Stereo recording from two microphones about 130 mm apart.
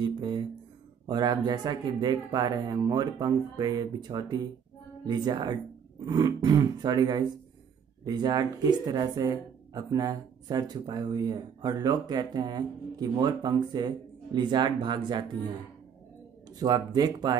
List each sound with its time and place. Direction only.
0.0 s music: 35° right (ahead or behind)
1.0 s speech: 35° right (ahead or behind)
16.5 s speech: 30° right (ahead or behind)